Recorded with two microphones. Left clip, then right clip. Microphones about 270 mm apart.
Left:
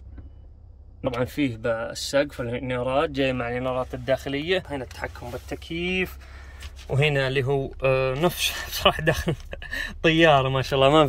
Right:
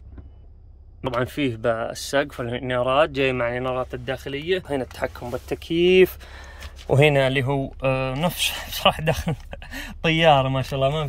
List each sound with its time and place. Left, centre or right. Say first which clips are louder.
1.0 s speech: right 2 dB; centre
4.6 s speech: right 6 dB; right; by 11.1 s centre